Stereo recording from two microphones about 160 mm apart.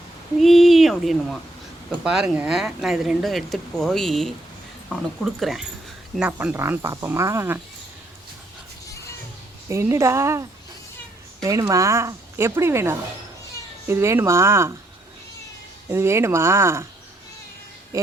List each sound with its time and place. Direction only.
0.3 s speech: centre (ahead or behind)
9.6 s speech: 15° right (ahead or behind)
11.4 s speech: 20° right (ahead or behind)
15.9 s speech: 15° right (ahead or behind)